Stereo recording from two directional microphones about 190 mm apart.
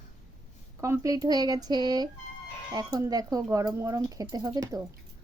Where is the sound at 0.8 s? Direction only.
15° right (ahead or behind).